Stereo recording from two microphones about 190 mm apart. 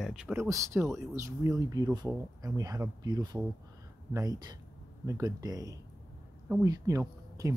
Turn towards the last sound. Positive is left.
turn(degrees=-15)  # may be behind; listen again after turning